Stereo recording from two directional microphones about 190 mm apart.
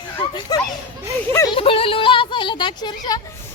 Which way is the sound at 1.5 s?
30° left (ahead or behind).